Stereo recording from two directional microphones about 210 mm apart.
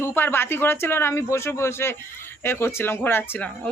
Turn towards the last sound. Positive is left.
turn(degrees=10)  # may be behind; listen again after turning